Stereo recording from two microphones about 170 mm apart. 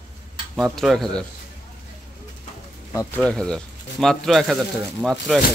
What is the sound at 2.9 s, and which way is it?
Speech, 20° left (ahead or behind).